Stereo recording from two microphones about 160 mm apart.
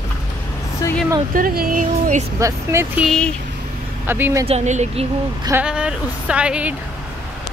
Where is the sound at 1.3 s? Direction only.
65° right (ahead or behind).